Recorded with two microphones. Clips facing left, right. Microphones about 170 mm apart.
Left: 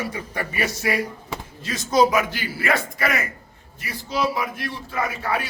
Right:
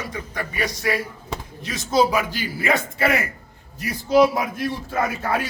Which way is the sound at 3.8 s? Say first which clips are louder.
Right 8 dB; 45° right (ahead or behind).